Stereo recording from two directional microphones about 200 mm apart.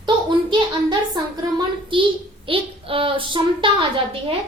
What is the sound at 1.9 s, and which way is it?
A woman's voice, 25° right (ahead or behind).